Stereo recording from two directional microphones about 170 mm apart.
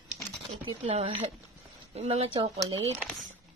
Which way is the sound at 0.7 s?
30° right (ahead or behind).